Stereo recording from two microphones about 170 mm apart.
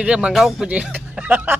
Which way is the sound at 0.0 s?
5° right (ahead or behind).